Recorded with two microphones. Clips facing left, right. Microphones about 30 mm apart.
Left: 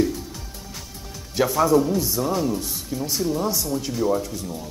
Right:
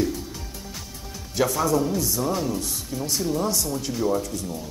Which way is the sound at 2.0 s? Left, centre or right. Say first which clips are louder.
Left 2 dB; centre.